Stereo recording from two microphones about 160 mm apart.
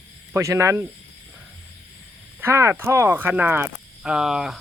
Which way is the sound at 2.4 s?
15° right (ahead or behind).